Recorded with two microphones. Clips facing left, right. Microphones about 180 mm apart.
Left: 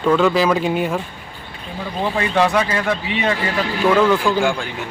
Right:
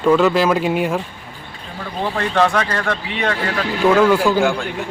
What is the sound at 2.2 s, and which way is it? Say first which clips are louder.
Speech: even; 10° left (ahead or behind).